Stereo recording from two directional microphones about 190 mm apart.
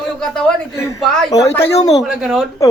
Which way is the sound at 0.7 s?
15° left (ahead or behind).